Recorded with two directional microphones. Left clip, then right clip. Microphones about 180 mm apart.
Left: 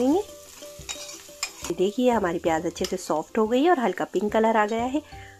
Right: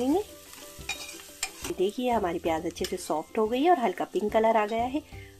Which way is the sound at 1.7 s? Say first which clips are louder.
Left 5 dB; 20° left (ahead or behind).